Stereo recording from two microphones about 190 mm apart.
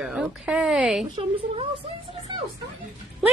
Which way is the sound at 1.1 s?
25° right (ahead or behind).